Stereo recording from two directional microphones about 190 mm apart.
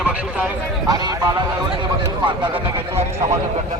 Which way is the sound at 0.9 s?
20° right (ahead or behind).